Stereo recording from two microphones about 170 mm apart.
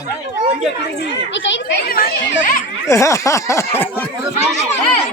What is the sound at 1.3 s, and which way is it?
Speech, 90° left.